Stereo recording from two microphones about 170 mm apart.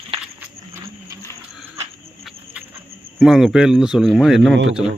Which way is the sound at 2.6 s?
5° right (ahead or behind).